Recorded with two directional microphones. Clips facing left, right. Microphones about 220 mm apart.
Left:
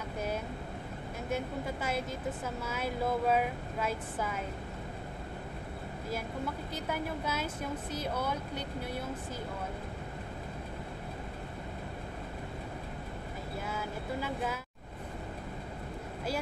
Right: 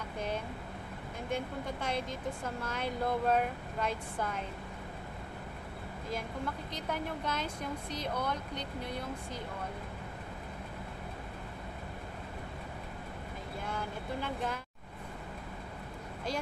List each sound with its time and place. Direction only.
1.3 s a woman's voice: 5° left (ahead or behind)
6.0 s a woman's voice: 5° left (ahead or behind)
13.7 s a woman's voice: 5° left (ahead or behind)